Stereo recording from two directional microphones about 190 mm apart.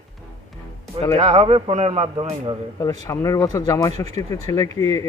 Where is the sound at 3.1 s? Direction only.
20° left (ahead or behind).